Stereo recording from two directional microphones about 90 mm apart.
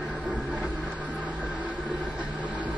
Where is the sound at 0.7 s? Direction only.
5° left (ahead or behind).